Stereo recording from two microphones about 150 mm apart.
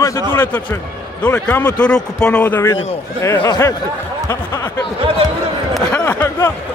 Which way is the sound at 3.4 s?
25° left (ahead or behind).